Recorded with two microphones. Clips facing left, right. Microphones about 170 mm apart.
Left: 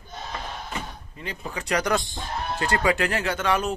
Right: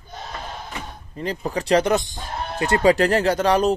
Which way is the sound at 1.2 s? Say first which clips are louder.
Right 9 dB; 35° right (ahead or behind).